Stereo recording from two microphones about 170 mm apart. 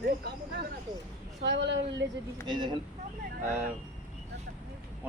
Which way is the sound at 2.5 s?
25° right (ahead or behind).